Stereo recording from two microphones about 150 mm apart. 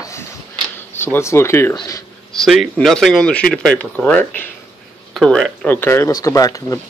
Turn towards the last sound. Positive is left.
turn(degrees=20)  # may be behind; listen again after turning